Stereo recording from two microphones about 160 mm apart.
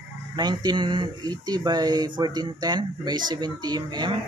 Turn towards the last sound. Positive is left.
turn(degrees=-25)  # may be behind; listen again after turning